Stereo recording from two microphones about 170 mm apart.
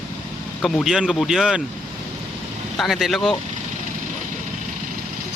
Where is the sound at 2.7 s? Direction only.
Centre (ahead or behind).